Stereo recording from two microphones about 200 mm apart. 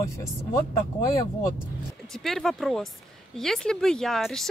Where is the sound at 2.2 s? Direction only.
Centre (ahead or behind).